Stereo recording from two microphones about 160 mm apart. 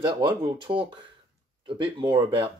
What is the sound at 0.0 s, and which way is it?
Speech, 30° right (ahead or behind).